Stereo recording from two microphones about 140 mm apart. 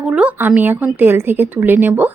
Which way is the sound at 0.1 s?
10° right (ahead or behind).